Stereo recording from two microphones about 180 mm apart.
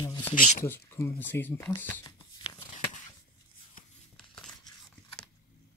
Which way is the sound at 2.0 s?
25° left (ahead or behind).